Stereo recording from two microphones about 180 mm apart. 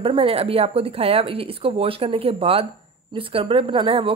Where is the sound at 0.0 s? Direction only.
30° right (ahead or behind).